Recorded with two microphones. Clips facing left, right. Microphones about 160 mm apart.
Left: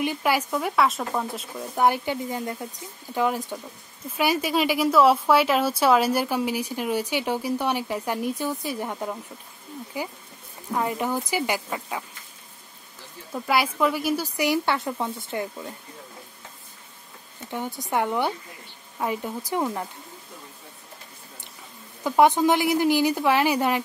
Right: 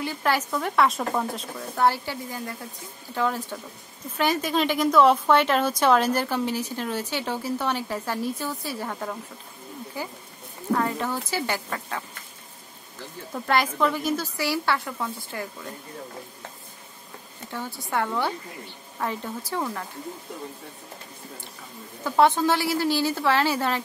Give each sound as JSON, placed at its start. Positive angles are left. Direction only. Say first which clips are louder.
{"t": 0.0, "sound": "speech", "louder": "left 2 dB", "side_deg": 15}
{"t": 1.8, "sound": "speech", "louder": "left 1 dB", "side_deg": 20}
{"t": 13.3, "sound": "speech", "louder": "even", "side_deg": 5}
{"t": 17.5, "sound": "speech", "louder": "left 3 dB", "side_deg": 20}
{"t": 22.0, "sound": "speech", "louder": "left 2 dB", "side_deg": 15}